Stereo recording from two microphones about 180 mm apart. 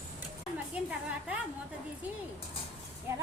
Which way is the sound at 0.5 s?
10° right (ahead or behind).